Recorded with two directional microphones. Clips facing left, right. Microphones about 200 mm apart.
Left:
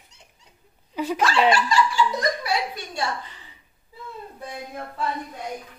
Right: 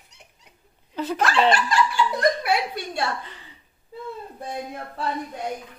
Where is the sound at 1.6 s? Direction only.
55° right (ahead or behind).